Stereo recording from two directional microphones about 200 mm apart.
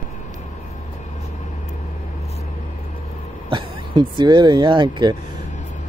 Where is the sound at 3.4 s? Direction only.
25° right (ahead or behind).